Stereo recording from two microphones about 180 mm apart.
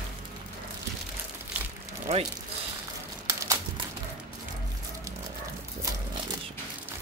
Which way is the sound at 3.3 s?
20° right (ahead or behind).